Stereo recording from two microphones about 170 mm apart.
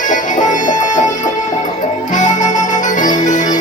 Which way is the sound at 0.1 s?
50° left (ahead or behind).